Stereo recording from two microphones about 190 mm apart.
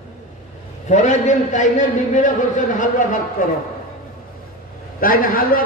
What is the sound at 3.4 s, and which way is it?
Speech, 45° left (ahead or behind).